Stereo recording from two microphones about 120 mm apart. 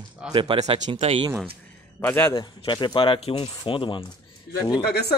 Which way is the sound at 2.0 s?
15° left (ahead or behind).